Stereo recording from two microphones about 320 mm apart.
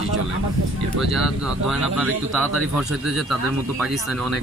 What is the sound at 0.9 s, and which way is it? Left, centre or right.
Speech, centre.